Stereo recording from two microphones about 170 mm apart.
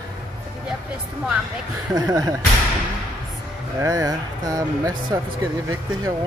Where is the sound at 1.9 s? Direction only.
20° right (ahead or behind).